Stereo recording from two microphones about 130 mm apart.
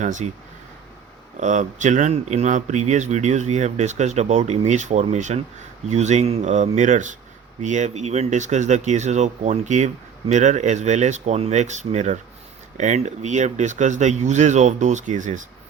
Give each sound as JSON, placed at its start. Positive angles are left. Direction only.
{"t": 0.0, "sound": "speech", "side_deg": -70}
{"t": 1.4, "sound": "speech", "side_deg": -70}